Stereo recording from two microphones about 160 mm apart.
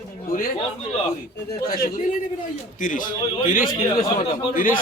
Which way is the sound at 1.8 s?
55° left (ahead or behind).